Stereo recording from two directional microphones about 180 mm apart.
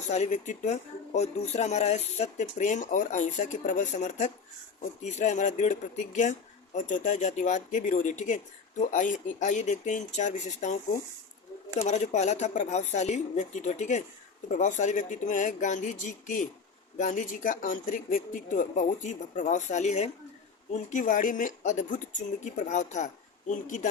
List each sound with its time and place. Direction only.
0.1 s speech: 40° left (ahead or behind)
6.7 s speech: 45° left (ahead or behind)
11.8 s speech: 40° left (ahead or behind)